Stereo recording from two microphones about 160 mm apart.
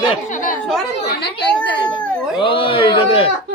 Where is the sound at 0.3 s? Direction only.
55° left (ahead or behind).